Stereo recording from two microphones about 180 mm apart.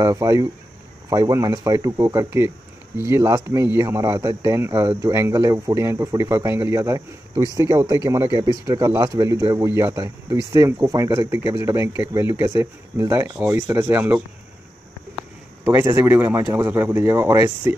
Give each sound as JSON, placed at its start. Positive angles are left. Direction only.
{"t": 0.0, "sound": "speech", "side_deg": -20}
{"t": 15.6, "sound": "speech", "side_deg": -15}